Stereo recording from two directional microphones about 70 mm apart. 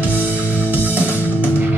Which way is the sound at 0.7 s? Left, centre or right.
Right.